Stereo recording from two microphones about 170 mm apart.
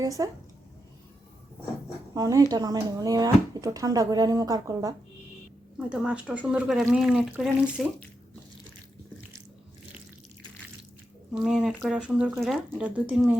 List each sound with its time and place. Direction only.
0.0 s speech: 20° right (ahead or behind)
2.1 s speech: 20° right (ahead or behind)
5.7 s speech: 5° right (ahead or behind)
11.3 s speech: 5° right (ahead or behind)